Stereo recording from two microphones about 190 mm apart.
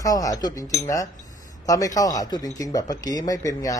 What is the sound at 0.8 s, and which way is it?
Cutlery, 15° left (ahead or behind).